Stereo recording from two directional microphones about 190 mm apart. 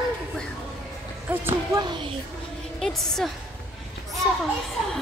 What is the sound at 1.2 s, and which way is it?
Music, 10° right (ahead or behind).